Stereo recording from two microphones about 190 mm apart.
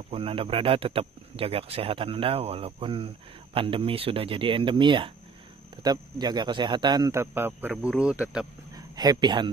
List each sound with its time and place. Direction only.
0.1 s speech: 30° right (ahead or behind); by 8.5 s 5° right (ahead or behind)
8.7 s speech: 20° right (ahead or behind)